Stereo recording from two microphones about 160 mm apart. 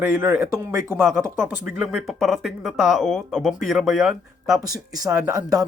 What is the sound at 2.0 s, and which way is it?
Speech, centre (ahead or behind).